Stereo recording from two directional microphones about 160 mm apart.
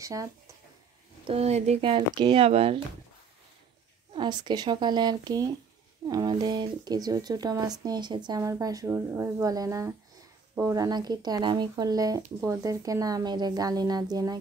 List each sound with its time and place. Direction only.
0.0 s speech: 20° right (ahead or behind)
1.2 s speech: 40° right (ahead or behind)
4.1 s speech: 30° right (ahead or behind)